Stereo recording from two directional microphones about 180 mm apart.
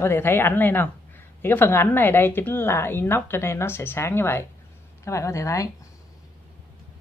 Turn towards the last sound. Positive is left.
turn(degrees=15)  # may be behind; listen again after turning